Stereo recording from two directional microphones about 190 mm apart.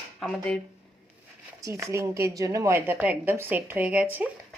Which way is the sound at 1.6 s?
15° right (ahead or behind).